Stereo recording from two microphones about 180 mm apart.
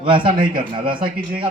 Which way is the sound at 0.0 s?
25° right (ahead or behind).